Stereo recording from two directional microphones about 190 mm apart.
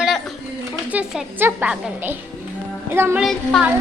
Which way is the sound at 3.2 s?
Centre (ahead or behind).